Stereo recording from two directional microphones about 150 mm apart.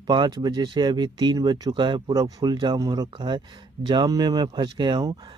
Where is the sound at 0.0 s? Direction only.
30° right (ahead or behind).